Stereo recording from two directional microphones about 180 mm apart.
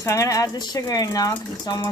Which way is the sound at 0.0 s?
15° left (ahead or behind).